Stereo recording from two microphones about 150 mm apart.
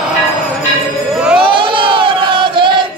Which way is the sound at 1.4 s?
35° right (ahead or behind).